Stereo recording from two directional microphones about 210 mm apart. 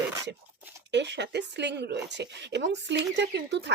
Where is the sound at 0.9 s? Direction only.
55° right (ahead or behind).